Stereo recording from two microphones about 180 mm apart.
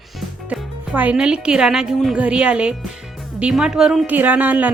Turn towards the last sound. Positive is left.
turn(degrees=-10)  # may be behind; listen again after turning